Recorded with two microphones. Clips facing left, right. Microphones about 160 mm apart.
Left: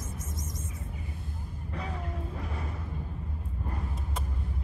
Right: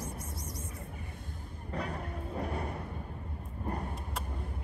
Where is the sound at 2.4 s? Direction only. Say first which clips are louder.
Right 3 dB; 60° right (ahead or behind).